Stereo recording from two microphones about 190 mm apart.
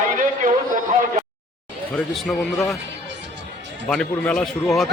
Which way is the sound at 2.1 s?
Centre (ahead or behind).